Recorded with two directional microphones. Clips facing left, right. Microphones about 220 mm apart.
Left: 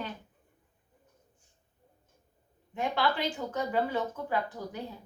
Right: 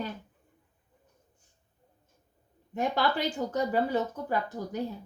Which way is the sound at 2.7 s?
40° right (ahead or behind).